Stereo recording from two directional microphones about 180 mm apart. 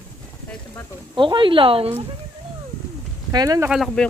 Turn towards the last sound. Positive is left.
turn(degrees=0)  # may be behind; listen again after turning